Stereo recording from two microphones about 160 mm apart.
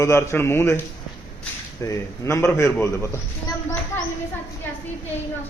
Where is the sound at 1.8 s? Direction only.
20° left (ahead or behind).